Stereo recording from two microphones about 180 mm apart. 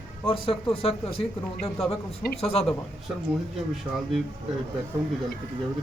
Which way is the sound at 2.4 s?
35° left (ahead or behind).